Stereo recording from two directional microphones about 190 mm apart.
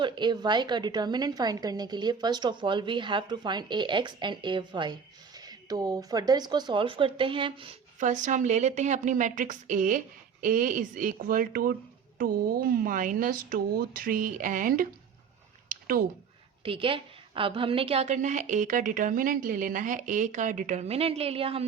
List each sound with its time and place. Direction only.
0.0 s a woman's voice: 25° right (ahead or behind)
7.9 s a woman's voice: 40° right (ahead or behind)
15.7 s a sound: 50° right (ahead or behind)
16.6 s a woman's voice: 30° right (ahead or behind)